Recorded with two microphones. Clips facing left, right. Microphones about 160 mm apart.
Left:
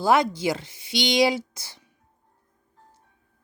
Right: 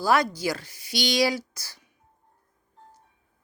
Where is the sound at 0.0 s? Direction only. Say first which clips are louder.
Left 2 dB; 20° left (ahead or behind).